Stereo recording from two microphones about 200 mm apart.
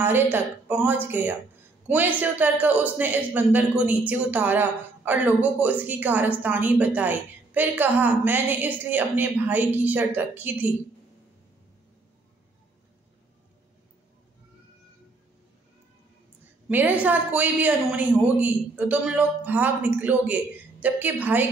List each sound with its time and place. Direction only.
0.0 s a man's voice: 10° right (ahead or behind)
16.6 s a man's voice: 10° right (ahead or behind)